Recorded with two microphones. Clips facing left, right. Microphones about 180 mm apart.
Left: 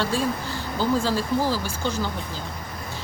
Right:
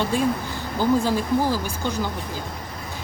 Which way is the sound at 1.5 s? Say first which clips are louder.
Right 1 dB; 15° right (ahead or behind).